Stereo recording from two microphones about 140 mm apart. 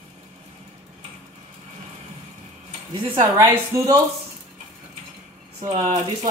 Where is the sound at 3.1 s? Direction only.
20° right (ahead or behind).